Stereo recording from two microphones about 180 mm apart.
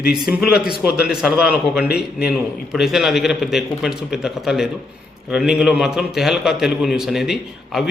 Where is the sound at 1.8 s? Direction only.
60° left (ahead or behind).